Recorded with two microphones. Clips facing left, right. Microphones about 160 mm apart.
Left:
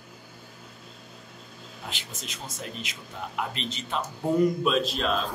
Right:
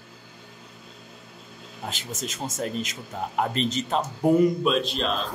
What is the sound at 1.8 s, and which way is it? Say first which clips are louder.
Speech: right 7 dB; 40° right (ahead or behind).